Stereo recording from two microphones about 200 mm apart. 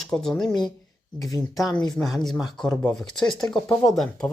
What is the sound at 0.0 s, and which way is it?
Speech, centre (ahead or behind).